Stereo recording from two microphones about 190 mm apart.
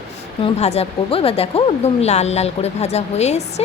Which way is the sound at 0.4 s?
35° left (ahead or behind).